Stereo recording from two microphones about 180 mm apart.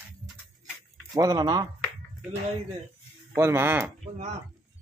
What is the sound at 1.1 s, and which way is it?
Speech, 20° right (ahead or behind).